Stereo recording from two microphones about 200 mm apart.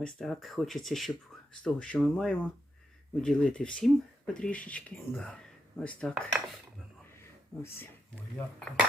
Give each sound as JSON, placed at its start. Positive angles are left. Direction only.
{"t": 0.0, "sound": "speech", "side_deg": 0}
{"t": 7.6, "sound": "speech", "side_deg": 10}